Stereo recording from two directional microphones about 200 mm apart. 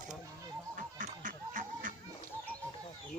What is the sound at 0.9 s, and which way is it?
Music, 40° right (ahead or behind).